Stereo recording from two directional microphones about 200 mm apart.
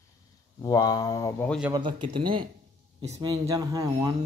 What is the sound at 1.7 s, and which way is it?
A child's voice, 25° right (ahead or behind).